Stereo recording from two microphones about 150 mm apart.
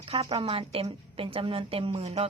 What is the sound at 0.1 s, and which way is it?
A woman's voice, 40° right (ahead or behind).